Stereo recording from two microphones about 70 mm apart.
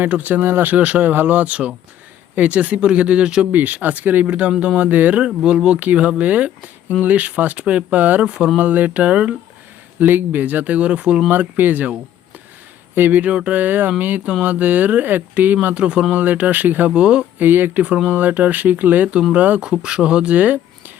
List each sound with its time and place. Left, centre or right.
0.0 s speech: right
5.2 s speech: centre; by 15.5 s right
15.6 s speech: centre
16.9 s speech: centre
17.4 s speech: right